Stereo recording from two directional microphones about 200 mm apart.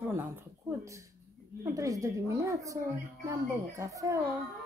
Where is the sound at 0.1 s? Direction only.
10° right (ahead or behind).